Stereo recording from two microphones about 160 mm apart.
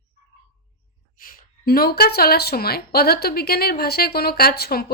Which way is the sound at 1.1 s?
65° left (ahead or behind).